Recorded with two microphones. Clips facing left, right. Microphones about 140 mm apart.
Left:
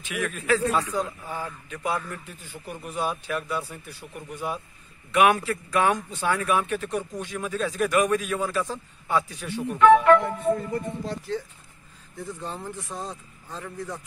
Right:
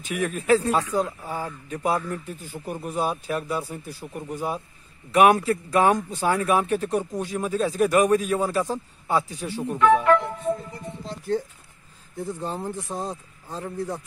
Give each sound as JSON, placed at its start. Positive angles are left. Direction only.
{"t": 0.0, "sound": "a man's voice", "side_deg": -40}
{"t": 10.0, "sound": "speech", "side_deg": 65}
{"t": 12.2, "sound": "a man's voice", "side_deg": -30}